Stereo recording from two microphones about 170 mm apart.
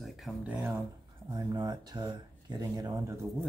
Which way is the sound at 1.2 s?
20° right (ahead or behind).